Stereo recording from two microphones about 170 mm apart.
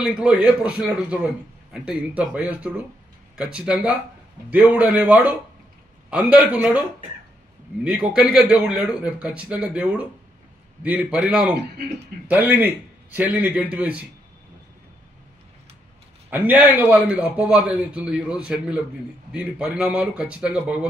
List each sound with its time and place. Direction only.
0.0 s a man's voice: 5° right (ahead or behind)
7.8 s a man's voice: 5° right (ahead or behind)
16.3 s a man's voice: 10° right (ahead or behind)